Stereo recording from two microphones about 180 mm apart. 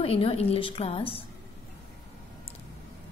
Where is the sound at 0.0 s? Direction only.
30° left (ahead or behind).